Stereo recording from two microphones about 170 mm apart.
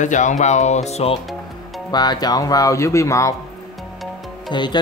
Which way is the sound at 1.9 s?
25° left (ahead or behind).